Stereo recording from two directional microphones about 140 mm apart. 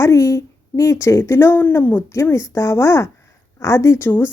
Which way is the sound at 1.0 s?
20° left (ahead or behind).